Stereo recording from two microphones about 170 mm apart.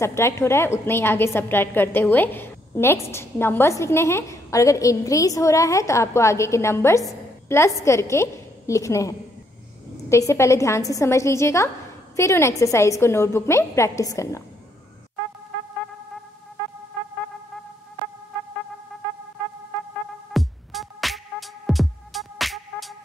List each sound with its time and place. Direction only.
0.0 s a woman's voice: 15° left (ahead or behind)
20.3 s music: centre (ahead or behind)